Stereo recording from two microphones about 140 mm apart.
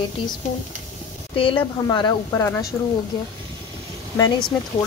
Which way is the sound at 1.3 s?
40° left (ahead or behind).